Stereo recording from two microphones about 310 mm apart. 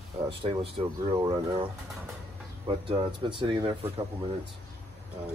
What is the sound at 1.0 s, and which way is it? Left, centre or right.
Speech, centre.